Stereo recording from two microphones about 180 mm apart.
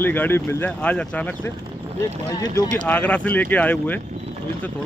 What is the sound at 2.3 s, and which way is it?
Speech, 20° left (ahead or behind).